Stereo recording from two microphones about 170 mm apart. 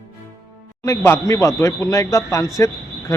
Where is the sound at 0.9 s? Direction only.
15° left (ahead or behind).